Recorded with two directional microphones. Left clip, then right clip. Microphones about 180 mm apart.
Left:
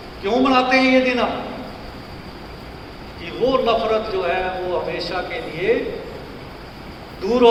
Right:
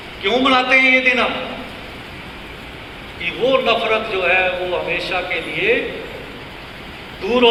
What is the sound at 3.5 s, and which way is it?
Speech, 75° left (ahead or behind).